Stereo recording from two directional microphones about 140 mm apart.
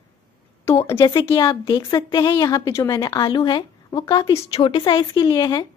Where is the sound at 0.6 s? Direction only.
20° left (ahead or behind).